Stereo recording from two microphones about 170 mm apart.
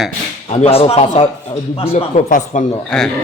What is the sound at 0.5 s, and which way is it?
A man's voice, 35° left (ahead or behind).